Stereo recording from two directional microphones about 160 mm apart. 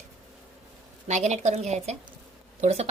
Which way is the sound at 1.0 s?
45° right (ahead or behind).